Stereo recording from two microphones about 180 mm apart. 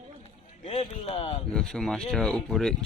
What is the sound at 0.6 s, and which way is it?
Speech, 30° left (ahead or behind).